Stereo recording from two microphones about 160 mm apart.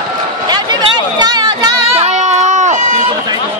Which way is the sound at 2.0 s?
45° right (ahead or behind).